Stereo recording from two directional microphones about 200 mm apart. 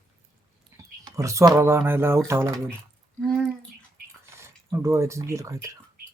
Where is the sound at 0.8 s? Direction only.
15° right (ahead or behind).